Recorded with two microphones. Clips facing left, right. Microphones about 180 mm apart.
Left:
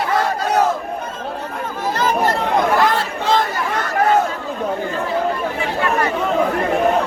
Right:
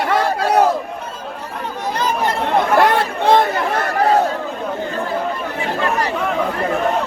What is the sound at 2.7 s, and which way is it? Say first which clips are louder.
Chatter: right 3 dB; 60° right (ahead or behind).